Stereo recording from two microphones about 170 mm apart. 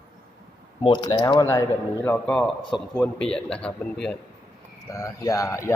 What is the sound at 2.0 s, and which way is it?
A man's voice, 10° left (ahead or behind).